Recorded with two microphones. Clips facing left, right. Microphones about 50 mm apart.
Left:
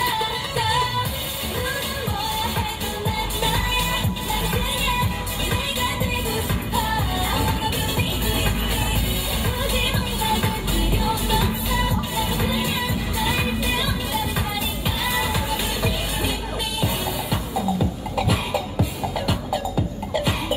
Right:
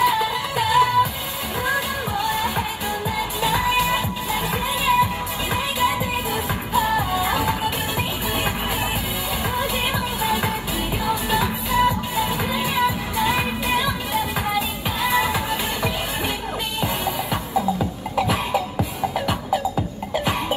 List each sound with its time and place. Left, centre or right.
0.0 s music: right
9.6 s music: right
18.1 s cough: right